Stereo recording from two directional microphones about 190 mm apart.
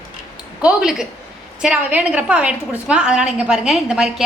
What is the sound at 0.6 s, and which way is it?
A woman's voice, 5° right (ahead or behind).